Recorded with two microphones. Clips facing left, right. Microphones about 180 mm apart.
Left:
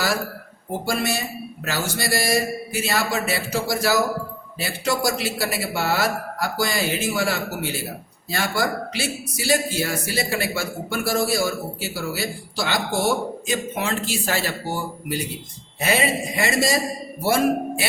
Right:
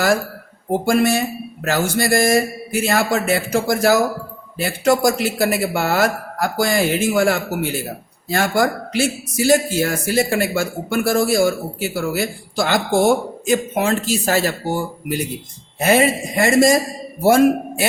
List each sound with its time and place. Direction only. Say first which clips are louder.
0.9 s a man's voice: right 8 dB; 50° right (ahead or behind)